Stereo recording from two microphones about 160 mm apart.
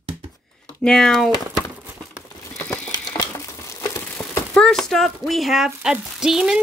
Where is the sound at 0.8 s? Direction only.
5° left (ahead or behind).